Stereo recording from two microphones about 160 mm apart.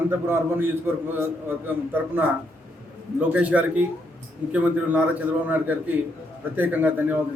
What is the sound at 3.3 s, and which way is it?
A man's voice, 10° right (ahead or behind).